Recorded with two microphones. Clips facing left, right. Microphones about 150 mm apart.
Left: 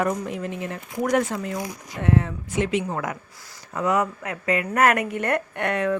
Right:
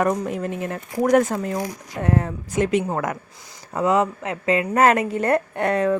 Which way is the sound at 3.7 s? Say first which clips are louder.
Right 3 dB; 25° right (ahead or behind).